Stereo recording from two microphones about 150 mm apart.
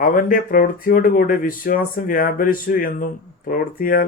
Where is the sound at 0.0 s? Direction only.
70° left (ahead or behind).